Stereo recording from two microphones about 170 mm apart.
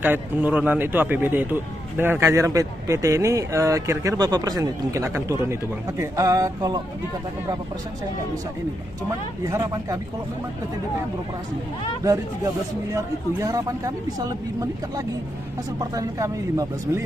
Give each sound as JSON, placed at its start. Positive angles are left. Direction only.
{"t": 0.0, "sound": "speech", "side_deg": -10}
{"t": 9.4, "sound": "speech", "side_deg": -20}
{"t": 12.9, "sound": "speech", "side_deg": -20}